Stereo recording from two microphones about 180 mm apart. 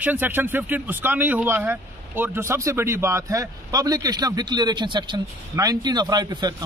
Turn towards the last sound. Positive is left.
turn(degrees=-25)  # may be behind; listen again after turning